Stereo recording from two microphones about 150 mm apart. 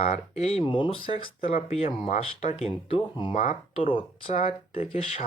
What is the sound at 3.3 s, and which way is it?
Speech, 45° left (ahead or behind).